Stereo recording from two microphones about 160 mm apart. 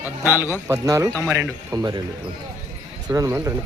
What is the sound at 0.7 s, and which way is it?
A man's voice, 20° right (ahead or behind).